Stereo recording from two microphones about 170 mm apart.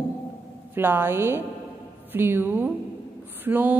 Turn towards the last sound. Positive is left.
turn(degrees=-10)  # may be behind; listen again after turning